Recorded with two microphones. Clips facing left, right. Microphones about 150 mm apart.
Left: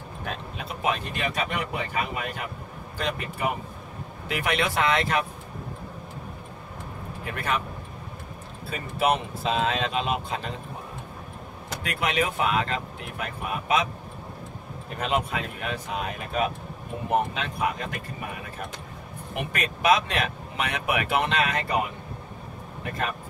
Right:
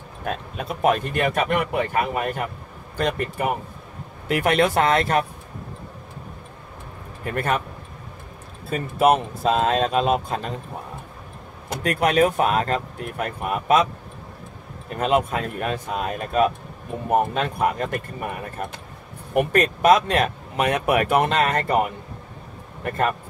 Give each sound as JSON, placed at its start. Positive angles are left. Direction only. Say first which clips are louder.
{"t": 0.2, "sound": "speech", "louder": "right 6 dB", "side_deg": -50}
{"t": 7.2, "sound": "speech", "louder": "right 5 dB", "side_deg": -50}
{"t": 8.6, "sound": "speech", "louder": "right 6 dB", "side_deg": -45}
{"t": 11.7, "sound": "speech", "louder": "right 8 dB", "side_deg": -45}
{"t": 15.0, "sound": "speech", "louder": "right 6 dB", "side_deg": -45}
{"t": 19.3, "sound": "speech", "louder": "right 11 dB", "side_deg": -45}